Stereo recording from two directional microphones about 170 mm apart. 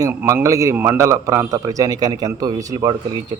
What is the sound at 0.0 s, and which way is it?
Speech, 15° right (ahead or behind).